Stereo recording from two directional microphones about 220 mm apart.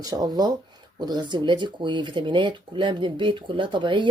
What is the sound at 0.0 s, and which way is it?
Speech, 15° right (ahead or behind).